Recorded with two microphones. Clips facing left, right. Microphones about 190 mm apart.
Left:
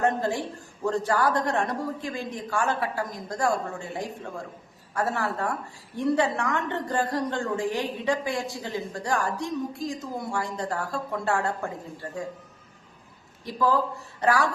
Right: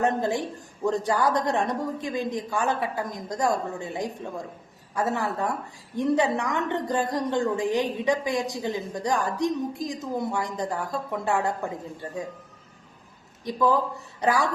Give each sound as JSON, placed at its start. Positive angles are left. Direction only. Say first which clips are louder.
{"t": 0.0, "sound": "a woman's voice", "louder": "right 1 dB", "side_deg": -20}
{"t": 13.4, "sound": "a woman's voice", "louder": "right 1 dB", "side_deg": -20}